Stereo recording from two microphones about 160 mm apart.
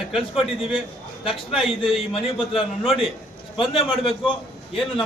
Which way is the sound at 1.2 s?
35° left (ahead or behind).